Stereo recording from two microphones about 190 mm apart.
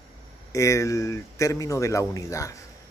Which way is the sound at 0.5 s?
15° left (ahead or behind).